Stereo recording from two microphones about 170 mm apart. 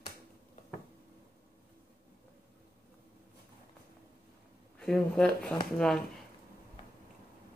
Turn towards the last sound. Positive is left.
turn(degrees=5)  # may be behind; listen again after turning